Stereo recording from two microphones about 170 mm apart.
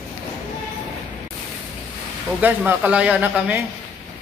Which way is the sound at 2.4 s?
10° right (ahead or behind).